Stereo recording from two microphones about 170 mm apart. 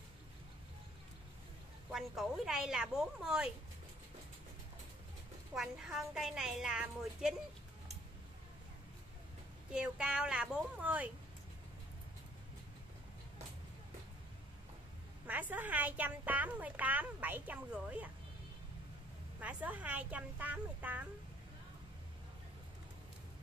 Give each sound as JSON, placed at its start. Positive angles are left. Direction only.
{"t": 1.9, "sound": "a woman's voice", "side_deg": -5}
{"t": 5.5, "sound": "a woman's voice", "side_deg": -5}
{"t": 9.7, "sound": "a woman's voice", "side_deg": -5}
{"t": 15.2, "sound": "a woman's voice", "side_deg": -10}
{"t": 19.4, "sound": "a woman's voice", "side_deg": -10}